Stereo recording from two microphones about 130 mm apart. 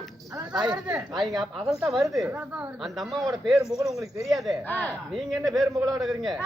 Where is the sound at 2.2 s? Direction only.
10° right (ahead or behind).